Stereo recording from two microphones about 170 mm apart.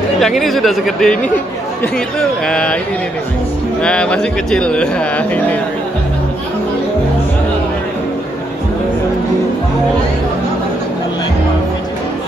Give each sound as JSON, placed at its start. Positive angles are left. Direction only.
{"t": 0.2, "sound": "speech", "side_deg": 0}
{"t": 3.8, "sound": "speech", "side_deg": 5}